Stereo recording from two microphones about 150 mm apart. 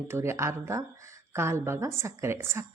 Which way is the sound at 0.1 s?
15° right (ahead or behind).